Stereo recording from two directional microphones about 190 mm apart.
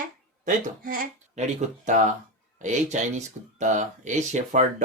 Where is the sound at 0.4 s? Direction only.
45° right (ahead or behind).